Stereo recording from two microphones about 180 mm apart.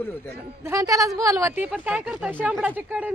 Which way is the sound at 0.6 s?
20° right (ahead or behind).